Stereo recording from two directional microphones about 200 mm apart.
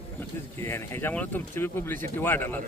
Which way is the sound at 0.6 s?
10° left (ahead or behind).